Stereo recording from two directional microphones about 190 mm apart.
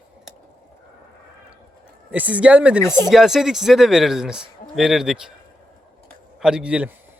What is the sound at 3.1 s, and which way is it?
Speech, centre (ahead or behind).